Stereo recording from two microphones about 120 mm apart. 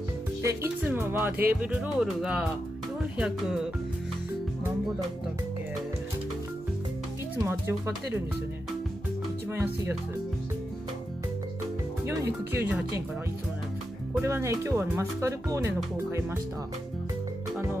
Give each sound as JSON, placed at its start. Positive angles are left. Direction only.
{"t": 0.4, "sound": "speech", "side_deg": -25}
{"t": 7.4, "sound": "speech", "side_deg": -20}
{"t": 9.5, "sound": "speech", "side_deg": -20}
{"t": 12.1, "sound": "speech", "side_deg": -25}
{"t": 14.2, "sound": "speech", "side_deg": -25}